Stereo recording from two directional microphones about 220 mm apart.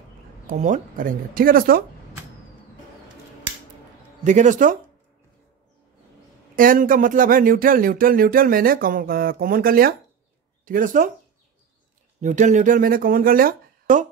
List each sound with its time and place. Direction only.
0.5 s speech: 35° right (ahead or behind)
4.2 s speech: 35° right (ahead or behind)
6.5 s speech: 40° right (ahead or behind)
12.2 s speech: 35° right (ahead or behind)